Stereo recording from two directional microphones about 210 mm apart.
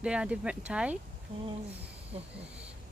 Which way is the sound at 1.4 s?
30° right (ahead or behind).